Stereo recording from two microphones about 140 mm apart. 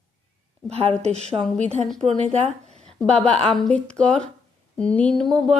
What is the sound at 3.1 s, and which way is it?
Speech, 5° left (ahead or behind).